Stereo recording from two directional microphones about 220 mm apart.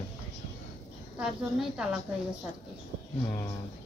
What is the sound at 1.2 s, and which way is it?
Speech, 5° right (ahead or behind).